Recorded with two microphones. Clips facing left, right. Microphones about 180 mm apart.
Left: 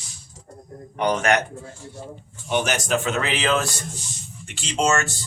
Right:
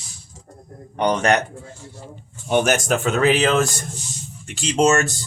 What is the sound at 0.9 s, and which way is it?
Speech, 35° right (ahead or behind).